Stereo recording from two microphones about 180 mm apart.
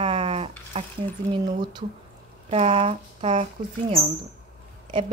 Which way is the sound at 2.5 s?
35° right (ahead or behind).